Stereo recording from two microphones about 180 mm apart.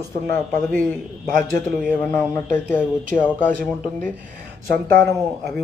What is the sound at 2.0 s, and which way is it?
Speech, 10° left (ahead or behind).